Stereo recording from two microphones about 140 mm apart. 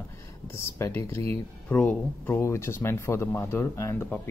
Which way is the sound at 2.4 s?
20° left (ahead or behind).